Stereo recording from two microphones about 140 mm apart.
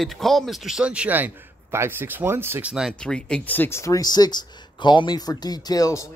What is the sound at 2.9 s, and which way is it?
Speech, 5° left (ahead or behind).